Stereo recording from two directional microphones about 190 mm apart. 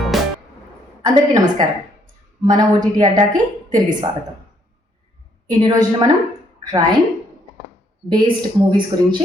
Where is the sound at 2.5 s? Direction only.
20° right (ahead or behind).